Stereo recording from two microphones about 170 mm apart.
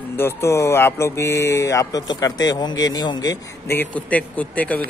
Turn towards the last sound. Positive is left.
turn(degrees=10)  # may be behind; listen again after turning